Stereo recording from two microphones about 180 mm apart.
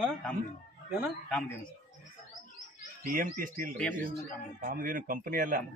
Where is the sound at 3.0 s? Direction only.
50° right (ahead or behind).